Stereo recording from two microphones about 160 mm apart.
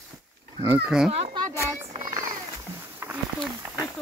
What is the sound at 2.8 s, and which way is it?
Wild animals, 10° right (ahead or behind).